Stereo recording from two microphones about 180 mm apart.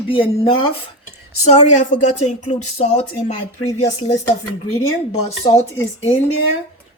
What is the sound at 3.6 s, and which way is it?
Speech, 20° left (ahead or behind).